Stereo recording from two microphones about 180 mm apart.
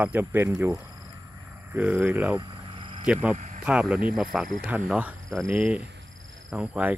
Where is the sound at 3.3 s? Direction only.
40° right (ahead or behind).